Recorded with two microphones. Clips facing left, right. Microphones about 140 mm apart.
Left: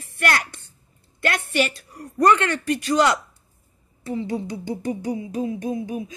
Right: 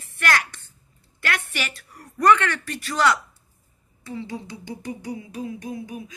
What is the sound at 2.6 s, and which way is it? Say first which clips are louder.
Speech: left 10 dB; 15° left (ahead or behind).